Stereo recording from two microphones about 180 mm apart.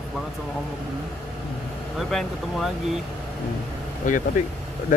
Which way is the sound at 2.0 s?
Centre (ahead or behind).